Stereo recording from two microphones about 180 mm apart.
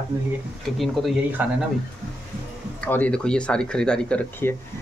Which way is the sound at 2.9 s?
10° left (ahead or behind).